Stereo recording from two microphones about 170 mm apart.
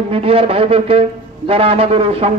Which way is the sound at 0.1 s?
35° right (ahead or behind).